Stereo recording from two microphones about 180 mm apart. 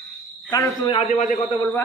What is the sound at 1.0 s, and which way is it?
Speech, 40° left (ahead or behind).